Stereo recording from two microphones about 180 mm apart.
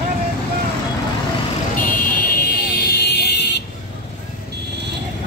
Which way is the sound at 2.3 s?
65° left (ahead or behind).